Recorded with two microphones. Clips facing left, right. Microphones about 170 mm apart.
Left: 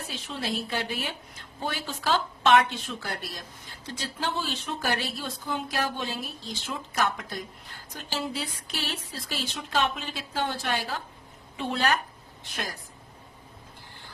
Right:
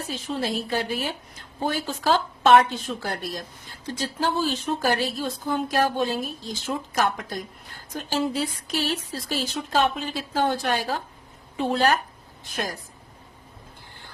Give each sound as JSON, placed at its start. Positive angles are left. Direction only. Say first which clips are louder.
{"t": 0.1, "sound": "speech", "louder": "right 5 dB", "side_deg": -40}